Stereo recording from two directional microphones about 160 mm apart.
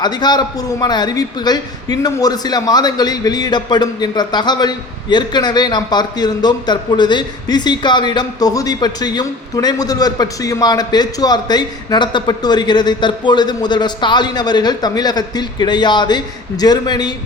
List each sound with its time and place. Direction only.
0.0 s a man's voice: 25° left (ahead or behind)